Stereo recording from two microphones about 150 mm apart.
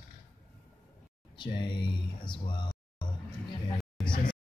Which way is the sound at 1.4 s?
30° left (ahead or behind).